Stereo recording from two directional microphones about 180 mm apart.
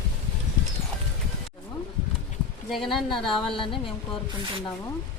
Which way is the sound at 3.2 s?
30° left (ahead or behind).